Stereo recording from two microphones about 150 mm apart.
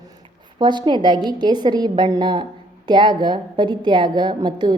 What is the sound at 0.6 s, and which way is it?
A woman's voice, 30° right (ahead or behind).